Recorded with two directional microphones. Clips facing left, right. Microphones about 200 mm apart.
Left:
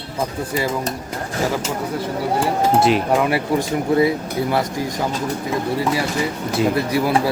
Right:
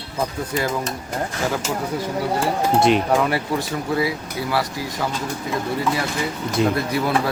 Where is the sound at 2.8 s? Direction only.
5° left (ahead or behind).